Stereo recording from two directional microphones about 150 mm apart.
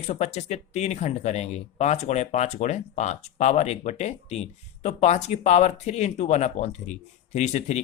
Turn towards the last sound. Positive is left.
turn(degrees=50)  # may be behind; listen again after turning